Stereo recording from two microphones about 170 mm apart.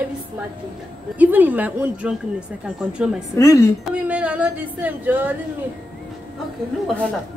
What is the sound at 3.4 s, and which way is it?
Speech, 20° left (ahead or behind).